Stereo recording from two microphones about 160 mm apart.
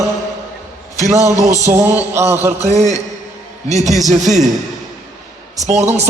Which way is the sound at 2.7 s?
45° right (ahead or behind).